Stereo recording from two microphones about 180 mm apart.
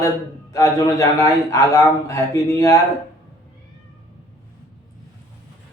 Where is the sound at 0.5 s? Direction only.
15° left (ahead or behind).